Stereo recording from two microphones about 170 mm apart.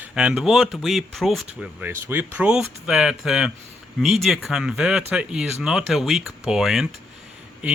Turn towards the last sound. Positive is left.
turn(degrees=0)  # may be behind; listen again after turning